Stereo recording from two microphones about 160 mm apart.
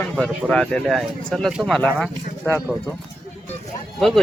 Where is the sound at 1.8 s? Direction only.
10° left (ahead or behind).